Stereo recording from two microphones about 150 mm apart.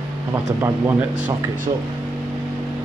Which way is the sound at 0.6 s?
15° right (ahead or behind).